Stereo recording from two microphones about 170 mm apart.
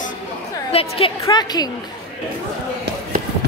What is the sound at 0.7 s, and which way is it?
Speech, 35° left (ahead or behind).